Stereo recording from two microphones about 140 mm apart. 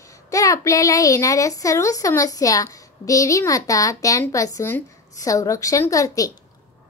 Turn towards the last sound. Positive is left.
turn(degrees=25)  # may be behind; listen again after turning